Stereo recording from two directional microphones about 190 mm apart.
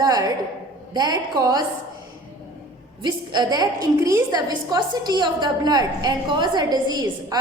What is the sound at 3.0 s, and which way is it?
A woman's voice, 20° right (ahead or behind).